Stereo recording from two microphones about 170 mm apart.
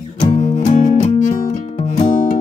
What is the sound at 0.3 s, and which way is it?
Music, 45° left (ahead or behind).